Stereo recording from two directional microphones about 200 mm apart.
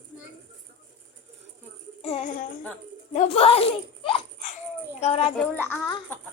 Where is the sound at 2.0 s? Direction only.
35° left (ahead or behind).